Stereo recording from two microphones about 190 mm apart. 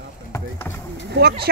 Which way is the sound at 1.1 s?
55° right (ahead or behind).